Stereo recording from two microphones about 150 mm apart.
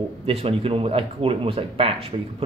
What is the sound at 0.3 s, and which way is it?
Speech, 40° right (ahead or behind).